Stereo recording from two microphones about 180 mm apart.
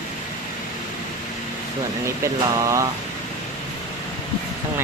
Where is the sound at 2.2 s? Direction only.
15° right (ahead or behind).